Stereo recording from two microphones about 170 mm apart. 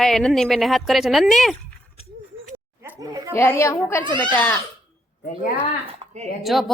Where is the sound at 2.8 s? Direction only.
20° right (ahead or behind).